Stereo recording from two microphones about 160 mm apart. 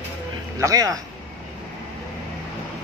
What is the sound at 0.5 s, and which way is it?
Speech, 20° right (ahead or behind).